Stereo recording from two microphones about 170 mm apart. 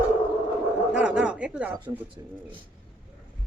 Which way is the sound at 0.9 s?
5° right (ahead or behind).